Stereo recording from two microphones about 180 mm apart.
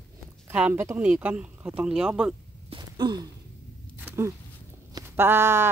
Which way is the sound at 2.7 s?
25° right (ahead or behind).